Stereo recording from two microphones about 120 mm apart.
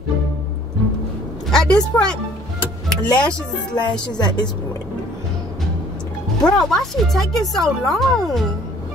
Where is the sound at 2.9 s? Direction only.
10° left (ahead or behind).